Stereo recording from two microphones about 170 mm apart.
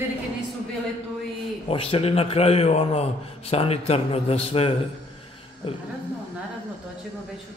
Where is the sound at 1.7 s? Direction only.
35° left (ahead or behind).